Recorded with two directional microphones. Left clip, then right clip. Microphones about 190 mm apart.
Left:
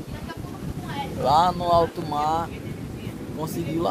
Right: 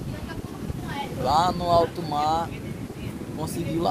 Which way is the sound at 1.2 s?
40° left (ahead or behind).